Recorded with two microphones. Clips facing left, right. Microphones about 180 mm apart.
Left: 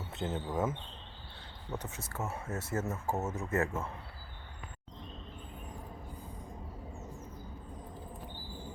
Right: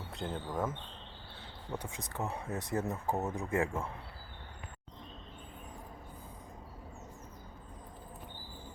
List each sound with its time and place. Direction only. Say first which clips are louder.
0.1 s speech: left 2 dB; 5° left (ahead or behind)
1.7 s speech: even; 10° right (ahead or behind)